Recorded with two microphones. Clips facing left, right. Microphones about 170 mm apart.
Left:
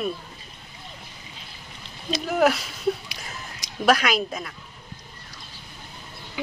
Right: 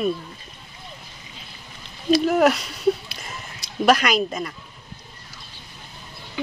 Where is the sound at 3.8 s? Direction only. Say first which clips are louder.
Right 2 dB; centre (ahead or behind).